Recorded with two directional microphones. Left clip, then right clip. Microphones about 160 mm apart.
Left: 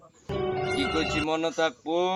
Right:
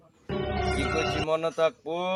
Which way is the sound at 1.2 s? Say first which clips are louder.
Right 1 dB; 35° right (ahead or behind).